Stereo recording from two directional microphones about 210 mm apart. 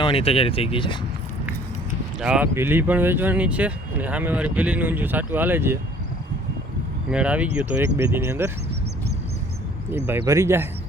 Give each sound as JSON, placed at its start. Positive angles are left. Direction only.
{"t": 0.0, "sound": "speech", "side_deg": 25}
{"t": 2.2, "sound": "speech", "side_deg": -5}
{"t": 7.1, "sound": "speech", "side_deg": -5}
{"t": 9.9, "sound": "speech", "side_deg": -10}